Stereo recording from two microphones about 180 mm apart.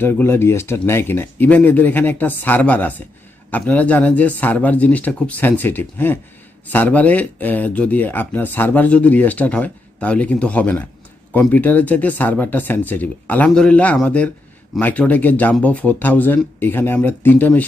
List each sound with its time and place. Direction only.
0.0 s speech: 10° left (ahead or behind)